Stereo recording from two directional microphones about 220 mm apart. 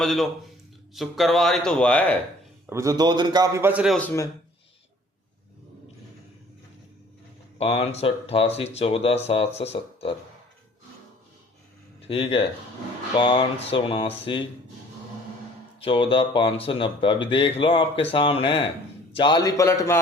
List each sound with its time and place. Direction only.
0.0 s speech: centre (ahead or behind)
2.6 s a man's voice: 15° right (ahead or behind); by 4.3 s 10° left (ahead or behind)
7.6 s speech: 25° left (ahead or behind)
12.0 s speech: 25° left (ahead or behind)
15.8 s a man's voice: 25° left (ahead or behind)